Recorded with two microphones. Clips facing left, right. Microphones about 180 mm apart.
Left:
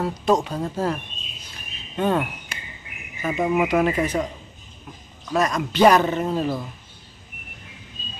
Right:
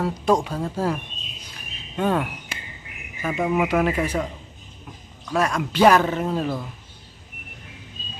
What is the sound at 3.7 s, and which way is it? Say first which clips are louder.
Mantra: left 1 dB; 5° right (ahead or behind).